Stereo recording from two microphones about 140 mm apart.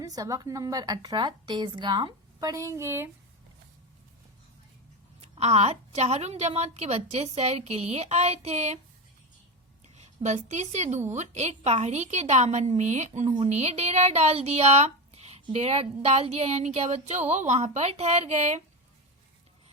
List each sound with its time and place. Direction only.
0.0 s a woman's voice: 25° right (ahead or behind)
5.3 s a woman's voice: 50° right (ahead or behind)
9.8 s a sound: 55° right (ahead or behind)
10.2 s a woman's voice: 55° right (ahead or behind)